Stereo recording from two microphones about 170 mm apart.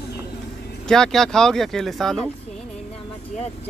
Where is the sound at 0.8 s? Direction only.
5° left (ahead or behind).